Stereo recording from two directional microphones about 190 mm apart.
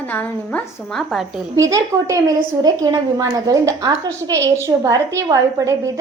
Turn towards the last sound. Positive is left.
turn(degrees=-20)  # may be behind; listen again after turning